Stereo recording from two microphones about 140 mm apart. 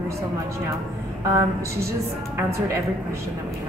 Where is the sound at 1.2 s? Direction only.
20° right (ahead or behind).